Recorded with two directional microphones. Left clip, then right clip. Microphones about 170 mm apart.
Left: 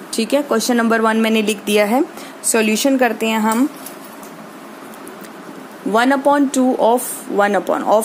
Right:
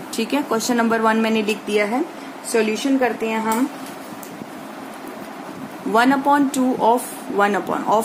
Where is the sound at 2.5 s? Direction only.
85° left.